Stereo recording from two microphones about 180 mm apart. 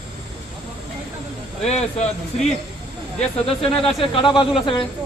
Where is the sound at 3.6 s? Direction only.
30° left (ahead or behind).